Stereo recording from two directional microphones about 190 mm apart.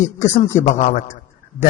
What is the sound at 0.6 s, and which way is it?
Speech, 40° left (ahead or behind).